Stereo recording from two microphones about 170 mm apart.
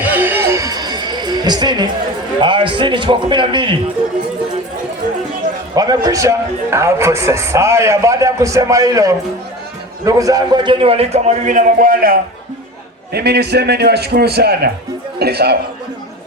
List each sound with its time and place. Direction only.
0.0 s a sound: 10° right (ahead or behind); by 1.9 s 25° right (ahead or behind)
2.4 s a man's voice: 30° right (ahead or behind)
5.7 s a man's voice: 20° right (ahead or behind); by 12.2 s 55° right (ahead or behind)
13.1 s a man's voice: 75° right (ahead or behind)